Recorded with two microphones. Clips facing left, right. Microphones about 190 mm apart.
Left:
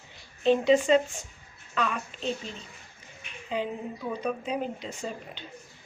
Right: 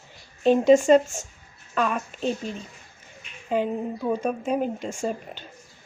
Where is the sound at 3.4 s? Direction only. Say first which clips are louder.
Right 6 dB; 50° right (ahead or behind).